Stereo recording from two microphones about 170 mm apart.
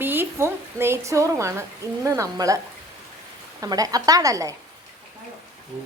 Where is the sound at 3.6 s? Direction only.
20° right (ahead or behind).